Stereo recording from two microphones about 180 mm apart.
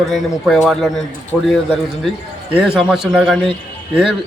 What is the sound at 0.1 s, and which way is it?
A man's voice, centre (ahead or behind).